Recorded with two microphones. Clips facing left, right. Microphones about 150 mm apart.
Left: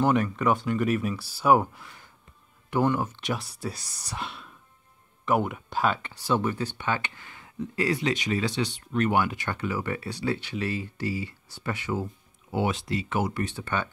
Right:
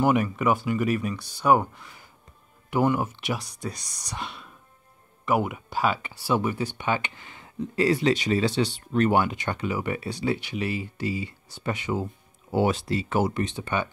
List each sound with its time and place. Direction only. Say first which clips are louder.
0.0 s speech: right 1 dB; 10° right (ahead or behind)
2.7 s speech: right 1 dB; 10° right (ahead or behind)
3.4 s speech: even; 5° left (ahead or behind); by 12.1 s 15° right (ahead or behind)
12.4 s speech: right 4 dB; 40° right (ahead or behind)
13.4 s speech: right 2 dB; 15° right (ahead or behind)